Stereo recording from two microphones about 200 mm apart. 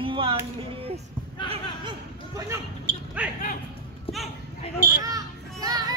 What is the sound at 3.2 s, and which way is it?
Basketball bounce, 5° right (ahead or behind).